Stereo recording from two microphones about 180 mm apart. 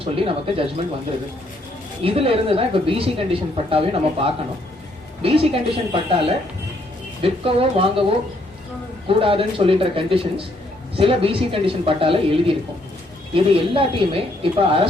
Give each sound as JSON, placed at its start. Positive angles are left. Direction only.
{"t": 0.0, "sound": "speech", "side_deg": -30}
{"t": 2.0, "sound": "speech", "side_deg": -30}
{"t": 9.0, "sound": "speech", "side_deg": -30}